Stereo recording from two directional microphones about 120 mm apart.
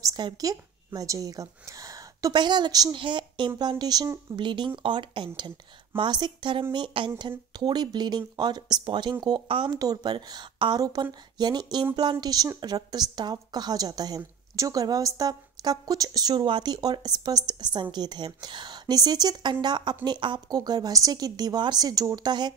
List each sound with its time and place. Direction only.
0.0 s a woman's voice: 30° right (ahead or behind)